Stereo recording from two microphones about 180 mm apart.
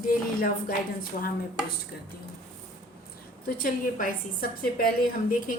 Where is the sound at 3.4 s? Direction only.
50° left (ahead or behind).